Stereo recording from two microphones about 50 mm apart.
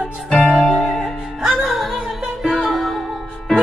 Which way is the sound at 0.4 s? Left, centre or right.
Centre.